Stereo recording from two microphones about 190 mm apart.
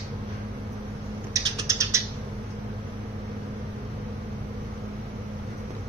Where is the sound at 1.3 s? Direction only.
15° right (ahead or behind).